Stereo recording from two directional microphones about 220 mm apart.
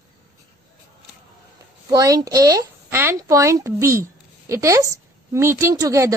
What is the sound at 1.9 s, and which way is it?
A woman's voice, 15° right (ahead or behind).